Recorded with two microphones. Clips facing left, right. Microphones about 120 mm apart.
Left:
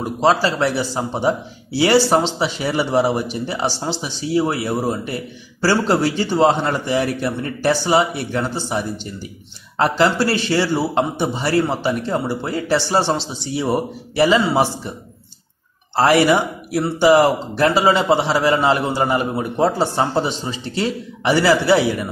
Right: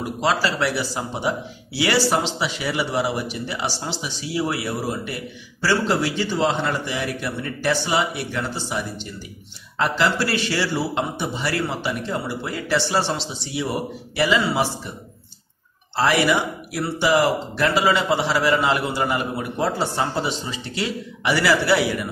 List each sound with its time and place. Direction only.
0.0 s a man's voice: 25° left (ahead or behind)
5.6 s a man's voice: 40° left (ahead or behind)
16.0 s a man's voice: 40° left (ahead or behind); by 21.8 s 25° left (ahead or behind)